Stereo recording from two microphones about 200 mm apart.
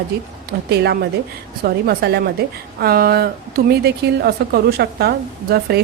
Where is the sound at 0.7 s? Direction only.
55° right (ahead or behind).